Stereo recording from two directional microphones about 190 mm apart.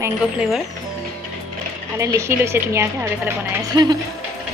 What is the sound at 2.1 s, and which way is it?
A woman's voice, 15° right (ahead or behind).